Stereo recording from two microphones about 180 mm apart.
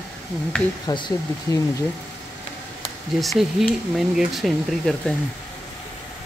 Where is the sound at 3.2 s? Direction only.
Centre (ahead or behind).